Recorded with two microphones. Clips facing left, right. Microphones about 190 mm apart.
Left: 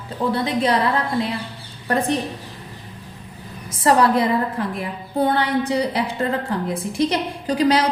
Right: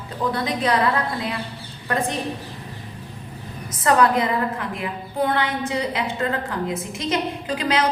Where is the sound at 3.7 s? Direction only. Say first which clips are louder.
Left 2 dB; 30° left (ahead or behind).